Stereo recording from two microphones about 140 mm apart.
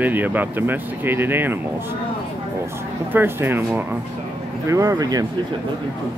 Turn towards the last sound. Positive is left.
turn(degrees=-25)  # may be behind; listen again after turning